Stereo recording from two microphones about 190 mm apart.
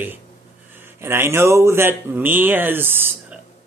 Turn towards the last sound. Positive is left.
turn(degrees=-10)  # may be behind; listen again after turning